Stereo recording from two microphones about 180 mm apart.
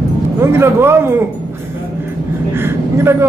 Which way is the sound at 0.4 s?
15° right (ahead or behind).